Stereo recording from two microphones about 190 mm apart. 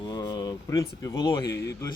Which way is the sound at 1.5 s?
60° left (ahead or behind).